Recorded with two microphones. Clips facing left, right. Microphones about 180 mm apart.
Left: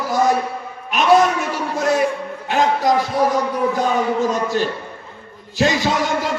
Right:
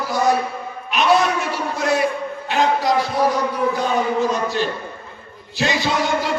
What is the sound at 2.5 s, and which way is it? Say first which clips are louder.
Music: left 2 dB; 45° left (ahead or behind).